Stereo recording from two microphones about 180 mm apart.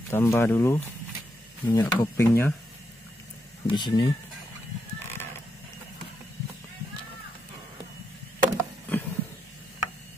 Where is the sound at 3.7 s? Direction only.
25° left (ahead or behind).